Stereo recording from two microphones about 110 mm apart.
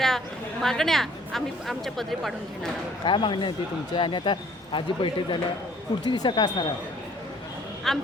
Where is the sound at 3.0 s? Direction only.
45° left (ahead or behind).